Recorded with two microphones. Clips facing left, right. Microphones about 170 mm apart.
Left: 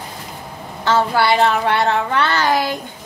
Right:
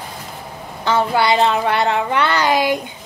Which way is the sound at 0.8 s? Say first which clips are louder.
Even; 15° right (ahead or behind).